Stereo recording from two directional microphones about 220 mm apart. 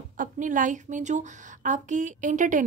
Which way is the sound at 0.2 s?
35° right (ahead or behind).